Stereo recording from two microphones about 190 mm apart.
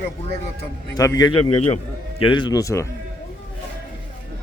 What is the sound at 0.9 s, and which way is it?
Speech, 20° left (ahead or behind).